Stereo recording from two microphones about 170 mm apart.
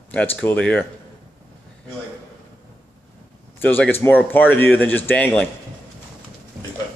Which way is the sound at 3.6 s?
10° left (ahead or behind).